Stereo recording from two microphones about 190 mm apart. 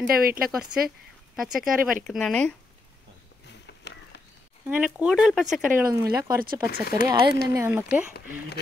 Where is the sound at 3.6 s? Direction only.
65° left (ahead or behind).